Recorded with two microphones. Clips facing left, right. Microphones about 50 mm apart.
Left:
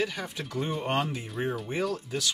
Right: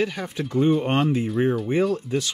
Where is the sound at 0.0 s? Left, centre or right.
Centre.